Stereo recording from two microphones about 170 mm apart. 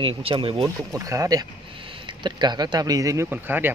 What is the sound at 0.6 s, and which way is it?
Speech, 20° right (ahead or behind).